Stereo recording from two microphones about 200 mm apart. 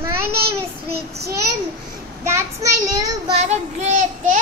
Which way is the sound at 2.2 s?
15° right (ahead or behind).